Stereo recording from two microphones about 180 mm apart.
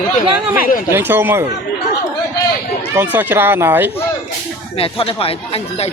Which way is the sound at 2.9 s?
10° right (ahead or behind).